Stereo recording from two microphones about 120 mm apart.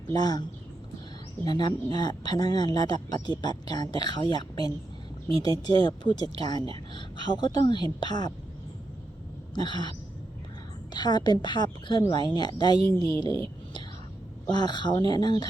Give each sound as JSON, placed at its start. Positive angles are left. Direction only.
{"t": 0.1, "sound": "speech", "side_deg": 35}
{"t": 1.5, "sound": "a woman's voice", "side_deg": 35}
{"t": 9.6, "sound": "speech", "side_deg": 40}
{"t": 10.9, "sound": "speech", "side_deg": 35}
{"t": 14.5, "sound": "speech", "side_deg": 40}